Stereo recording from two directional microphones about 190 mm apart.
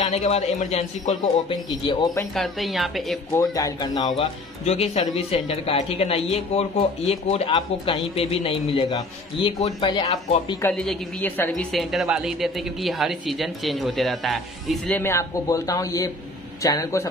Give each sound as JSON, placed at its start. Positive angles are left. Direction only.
{"t": 0.0, "sound": "speech", "side_deg": 35}
{"t": 2.3, "sound": "a woman's voice", "side_deg": 0}
{"t": 3.3, "sound": "speech", "side_deg": 20}
{"t": 4.6, "sound": "speech", "side_deg": 35}
{"t": 10.6, "sound": "a woman's voice", "side_deg": 5}
{"t": 15.0, "sound": "a man's voice", "side_deg": 15}